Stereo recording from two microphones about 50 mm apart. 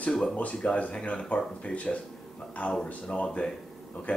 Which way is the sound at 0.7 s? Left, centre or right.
Left.